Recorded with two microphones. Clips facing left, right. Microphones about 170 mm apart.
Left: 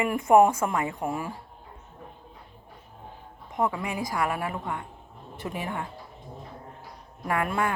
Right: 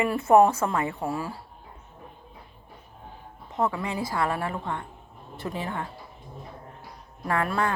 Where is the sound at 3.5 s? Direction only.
15° left (ahead or behind).